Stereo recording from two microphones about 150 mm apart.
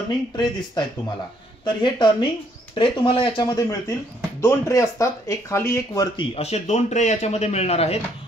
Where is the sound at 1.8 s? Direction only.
30° left (ahead or behind).